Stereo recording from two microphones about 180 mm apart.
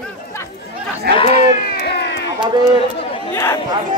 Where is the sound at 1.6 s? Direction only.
65° left (ahead or behind).